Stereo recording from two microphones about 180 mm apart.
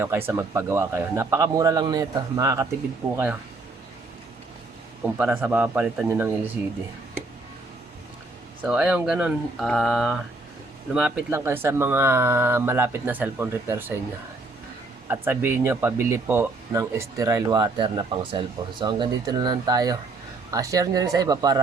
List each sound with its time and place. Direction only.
0.0 s speech: 10° right (ahead or behind)
3.0 s speech: 5° right (ahead or behind)
5.0 s speech: 10° right (ahead or behind)
8.6 s speech: 5° right (ahead or behind)
15.0 s speech: 10° right (ahead or behind)